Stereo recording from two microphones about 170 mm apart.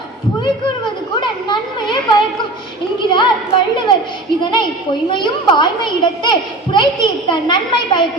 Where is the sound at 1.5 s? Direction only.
25° left (ahead or behind).